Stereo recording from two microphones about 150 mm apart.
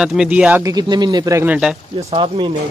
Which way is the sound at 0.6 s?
25° right (ahead or behind).